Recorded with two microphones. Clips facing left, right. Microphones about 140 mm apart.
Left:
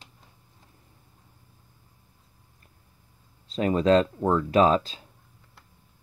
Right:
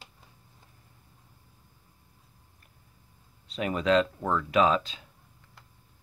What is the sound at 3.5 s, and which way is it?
Speech, 30° left (ahead or behind).